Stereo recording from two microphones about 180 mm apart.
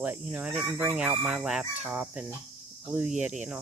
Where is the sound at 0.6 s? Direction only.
5° right (ahead or behind).